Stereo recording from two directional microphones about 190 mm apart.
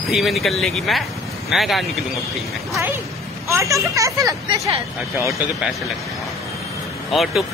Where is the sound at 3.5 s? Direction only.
15° right (ahead or behind).